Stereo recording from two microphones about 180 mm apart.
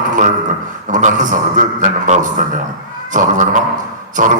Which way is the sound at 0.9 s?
45° right (ahead or behind).